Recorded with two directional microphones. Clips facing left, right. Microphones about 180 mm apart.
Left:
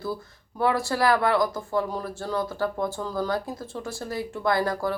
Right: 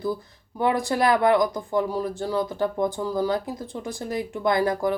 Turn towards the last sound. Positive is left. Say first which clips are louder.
# right 3 dB
turn(degrees=-20)  # may be behind; listen again after turning